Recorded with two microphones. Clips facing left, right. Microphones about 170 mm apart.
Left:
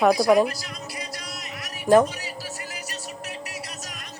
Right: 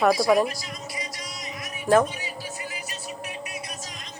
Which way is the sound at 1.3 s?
65° left (ahead or behind).